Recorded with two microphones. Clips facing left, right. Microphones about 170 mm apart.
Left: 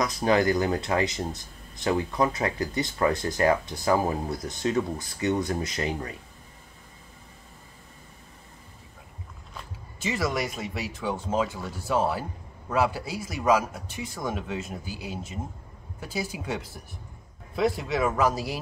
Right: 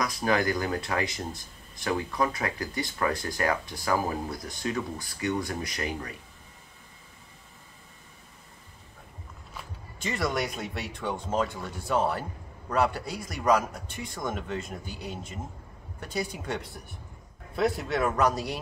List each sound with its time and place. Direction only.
0.0 s speech: 25° left (ahead or behind)
9.9 s speech: centre (ahead or behind)